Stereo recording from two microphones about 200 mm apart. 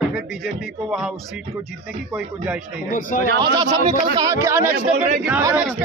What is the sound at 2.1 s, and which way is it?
Speech, 5° right (ahead or behind).